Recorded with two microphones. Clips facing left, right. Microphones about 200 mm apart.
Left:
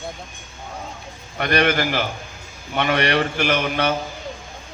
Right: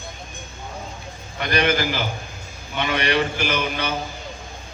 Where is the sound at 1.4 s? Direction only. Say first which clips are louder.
Left 2 dB; 60° left (ahead or behind).